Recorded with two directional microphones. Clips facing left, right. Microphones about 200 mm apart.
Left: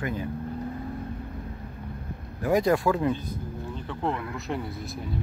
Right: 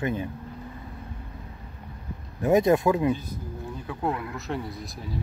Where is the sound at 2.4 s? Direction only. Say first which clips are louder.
Right 3 dB; 20° right (ahead or behind); by 4.6 s 5° right (ahead or behind).